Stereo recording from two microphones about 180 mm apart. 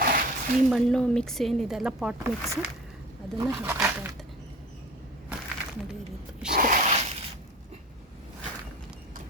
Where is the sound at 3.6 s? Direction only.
10° right (ahead or behind).